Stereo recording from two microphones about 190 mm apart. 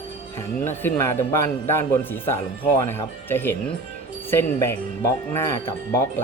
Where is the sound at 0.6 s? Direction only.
10° left (ahead or behind).